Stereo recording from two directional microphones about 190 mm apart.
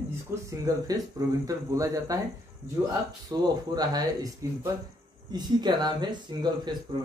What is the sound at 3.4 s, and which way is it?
Speech, 20° right (ahead or behind).